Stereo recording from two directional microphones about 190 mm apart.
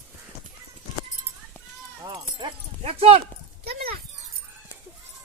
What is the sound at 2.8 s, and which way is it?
Speech, 30° right (ahead or behind).